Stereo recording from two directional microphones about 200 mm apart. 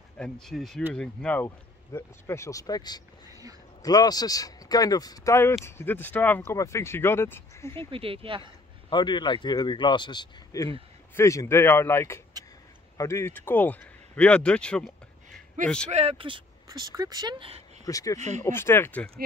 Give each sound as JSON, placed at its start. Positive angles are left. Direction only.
{"t": 0.2, "sound": "speech", "side_deg": 0}
{"t": 3.3, "sound": "a sound", "side_deg": -15}
{"t": 3.8, "sound": "speech", "side_deg": 20}
{"t": 7.9, "sound": "speech", "side_deg": -25}
{"t": 8.9, "sound": "speech", "side_deg": 20}
{"t": 15.9, "sound": "speech", "side_deg": -30}
{"t": 17.8, "sound": "speech", "side_deg": 15}